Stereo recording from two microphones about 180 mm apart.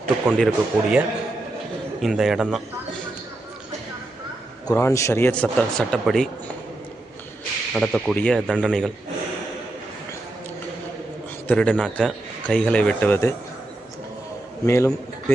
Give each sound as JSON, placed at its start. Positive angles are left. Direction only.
{"t": 0.3, "sound": "speech", "side_deg": 0}
{"t": 4.7, "sound": "a man's voice", "side_deg": 15}
{"t": 7.7, "sound": "speech", "side_deg": 5}
{"t": 11.4, "sound": "a man's voice", "side_deg": 10}
{"t": 14.7, "sound": "a man's voice", "side_deg": 15}